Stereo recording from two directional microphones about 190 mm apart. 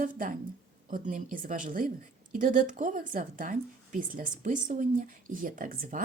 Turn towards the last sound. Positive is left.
turn(degrees=-45)  # may be behind; listen again after turning